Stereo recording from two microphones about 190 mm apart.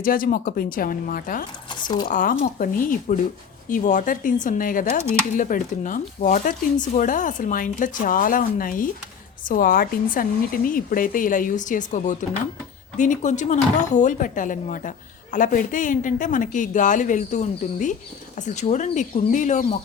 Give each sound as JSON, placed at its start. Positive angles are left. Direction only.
{"t": 0.0, "sound": "speech", "side_deg": 45}
{"t": 1.7, "sound": "speech", "side_deg": 25}
{"t": 2.0, "sound": "speech", "side_deg": 45}